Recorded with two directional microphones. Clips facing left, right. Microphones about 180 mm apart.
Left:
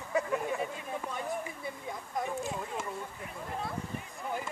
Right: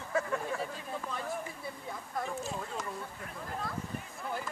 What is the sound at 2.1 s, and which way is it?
Speech, 15° left (ahead or behind).